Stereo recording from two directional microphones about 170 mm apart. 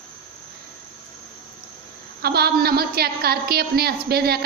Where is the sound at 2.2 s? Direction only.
65° right (ahead or behind).